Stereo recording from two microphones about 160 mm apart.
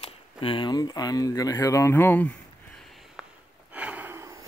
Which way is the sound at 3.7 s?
10° right (ahead or behind).